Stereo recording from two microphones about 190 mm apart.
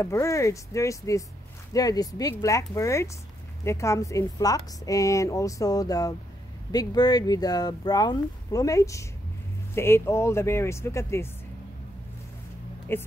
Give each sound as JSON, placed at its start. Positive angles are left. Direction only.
{"t": 0.0, "sound": "a woman's voice", "side_deg": 15}
{"t": 12.9, "sound": "a woman's voice", "side_deg": 10}